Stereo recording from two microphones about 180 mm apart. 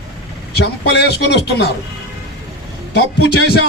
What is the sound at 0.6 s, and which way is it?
Speech, 70° left (ahead or behind).